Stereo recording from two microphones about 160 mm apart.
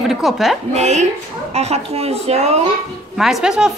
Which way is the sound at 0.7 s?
45° right (ahead or behind).